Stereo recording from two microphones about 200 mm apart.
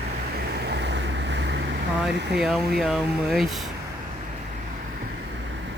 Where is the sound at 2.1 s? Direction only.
60° right (ahead or behind).